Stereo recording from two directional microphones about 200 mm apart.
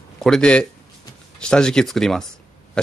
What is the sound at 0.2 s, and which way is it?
Speech, 5° left (ahead or behind).